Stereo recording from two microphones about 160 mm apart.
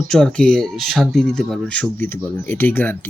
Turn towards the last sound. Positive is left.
turn(degrees=10)  # may be behind; listen again after turning